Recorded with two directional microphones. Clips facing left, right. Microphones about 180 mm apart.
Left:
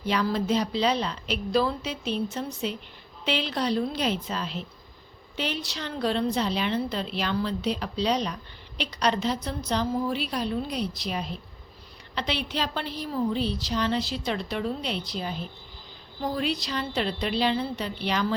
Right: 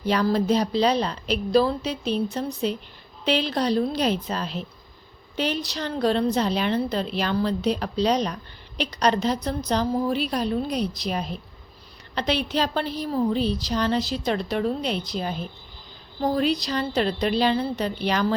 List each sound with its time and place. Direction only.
0.0 s a woman's voice: 40° right (ahead or behind)